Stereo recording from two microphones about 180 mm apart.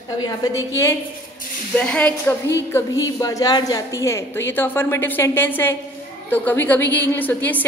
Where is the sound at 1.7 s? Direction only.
5° left (ahead or behind).